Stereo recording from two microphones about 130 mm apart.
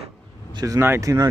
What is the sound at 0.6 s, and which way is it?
Speech, 20° right (ahead or behind).